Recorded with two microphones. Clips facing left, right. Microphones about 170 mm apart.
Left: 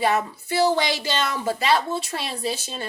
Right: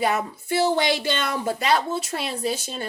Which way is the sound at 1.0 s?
55° right (ahead or behind).